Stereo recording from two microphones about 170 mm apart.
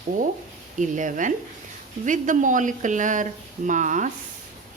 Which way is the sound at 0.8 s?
50° right (ahead or behind).